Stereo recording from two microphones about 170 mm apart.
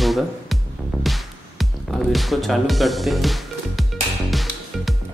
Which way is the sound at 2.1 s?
Centre (ahead or behind).